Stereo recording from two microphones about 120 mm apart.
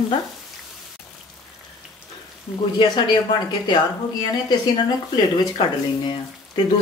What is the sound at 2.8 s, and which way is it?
Sizzle, 40° left (ahead or behind).